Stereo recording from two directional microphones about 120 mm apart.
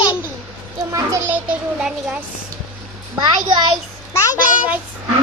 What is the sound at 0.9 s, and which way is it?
Speech, 25° right (ahead or behind).